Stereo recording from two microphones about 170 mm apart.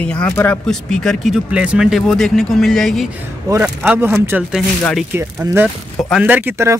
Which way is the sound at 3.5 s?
15° right (ahead or behind).